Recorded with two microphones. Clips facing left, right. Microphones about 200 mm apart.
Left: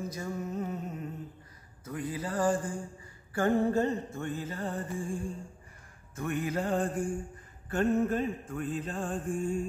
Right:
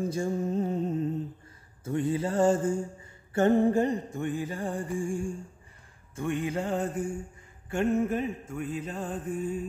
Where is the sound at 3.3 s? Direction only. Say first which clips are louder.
Right 4 dB; 20° right (ahead or behind).